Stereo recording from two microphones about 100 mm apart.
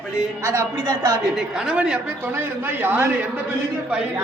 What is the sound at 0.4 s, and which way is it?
Speech, 35° right (ahead or behind).